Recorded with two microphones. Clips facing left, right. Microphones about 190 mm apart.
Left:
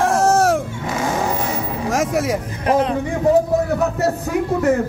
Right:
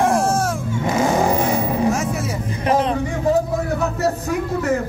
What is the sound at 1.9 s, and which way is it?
Vehicle, 90° left.